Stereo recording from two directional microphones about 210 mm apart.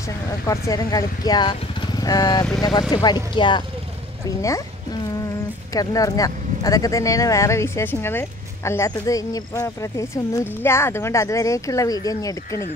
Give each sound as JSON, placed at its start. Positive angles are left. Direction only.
{"t": 0.5, "sound": "speech", "side_deg": 15}
{"t": 5.8, "sound": "speech", "side_deg": 15}